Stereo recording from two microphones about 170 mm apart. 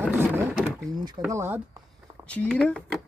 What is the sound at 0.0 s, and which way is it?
Drawer open or close, 10° right (ahead or behind).